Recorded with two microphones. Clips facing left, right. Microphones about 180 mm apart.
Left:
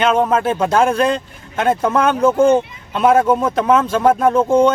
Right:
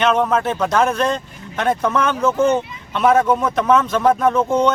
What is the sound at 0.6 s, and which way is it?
Speech, 30° left (ahead or behind).